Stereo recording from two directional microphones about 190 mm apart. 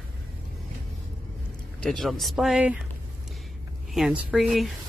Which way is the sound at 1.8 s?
Centre (ahead or behind).